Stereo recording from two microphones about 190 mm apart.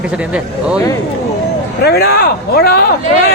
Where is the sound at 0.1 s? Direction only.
5° right (ahead or behind).